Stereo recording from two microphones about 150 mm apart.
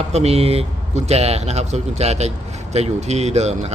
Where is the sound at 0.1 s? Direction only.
45° right (ahead or behind).